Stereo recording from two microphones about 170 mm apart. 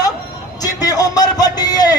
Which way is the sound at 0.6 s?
20° left (ahead or behind).